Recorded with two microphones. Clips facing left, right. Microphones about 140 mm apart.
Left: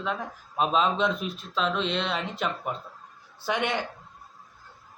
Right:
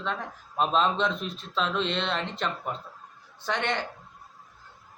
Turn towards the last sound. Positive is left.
turn(degrees=10)  # may be behind; listen again after turning